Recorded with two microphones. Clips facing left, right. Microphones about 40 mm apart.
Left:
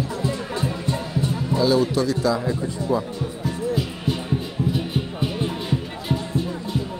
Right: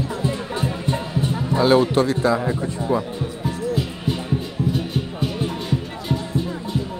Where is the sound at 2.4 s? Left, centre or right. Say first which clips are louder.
Right 2 dB; right.